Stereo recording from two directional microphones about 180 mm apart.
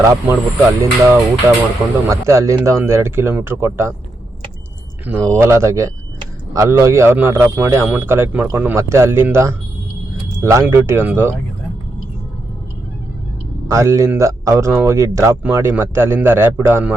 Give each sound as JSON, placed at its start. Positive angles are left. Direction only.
{"t": 0.0, "sound": "speech", "side_deg": -15}
{"t": 5.0, "sound": "speech", "side_deg": -15}
{"t": 13.7, "sound": "speech", "side_deg": -15}